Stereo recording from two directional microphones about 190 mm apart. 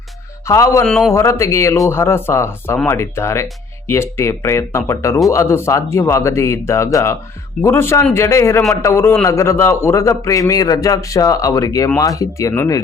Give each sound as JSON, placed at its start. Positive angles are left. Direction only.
{"t": 0.4, "sound": "a man's voice", "side_deg": 15}
{"t": 0.9, "sound": "a man's voice", "side_deg": 5}
{"t": 1.1, "sound": "a man's voice", "side_deg": 15}